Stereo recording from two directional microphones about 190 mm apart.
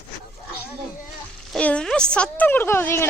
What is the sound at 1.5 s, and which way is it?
Speech, 5° left (ahead or behind).